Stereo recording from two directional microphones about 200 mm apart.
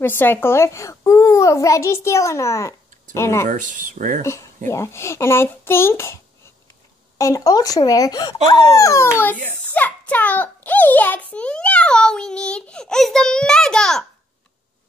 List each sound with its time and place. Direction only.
0.0 s a child's voice: 10° left (ahead or behind)
3.4 s speech: 40° right (ahead or behind)
4.6 s a child's voice: 15° left (ahead or behind)
7.2 s a child's voice: 15° left (ahead or behind)